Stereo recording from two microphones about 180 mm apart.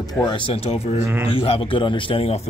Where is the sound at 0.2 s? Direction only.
25° left (ahead or behind).